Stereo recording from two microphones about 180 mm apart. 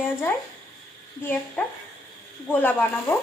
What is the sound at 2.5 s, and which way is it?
Speech, 10° left (ahead or behind).